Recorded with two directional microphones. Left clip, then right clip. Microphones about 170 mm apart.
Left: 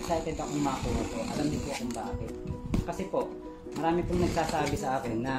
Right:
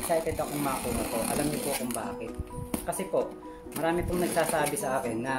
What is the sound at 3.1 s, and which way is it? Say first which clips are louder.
Speech: right 2 dB; 15° right (ahead or behind).